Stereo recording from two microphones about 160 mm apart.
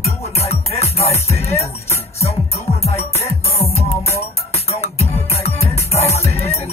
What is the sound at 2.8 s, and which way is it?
Music, 40° left (ahead or behind).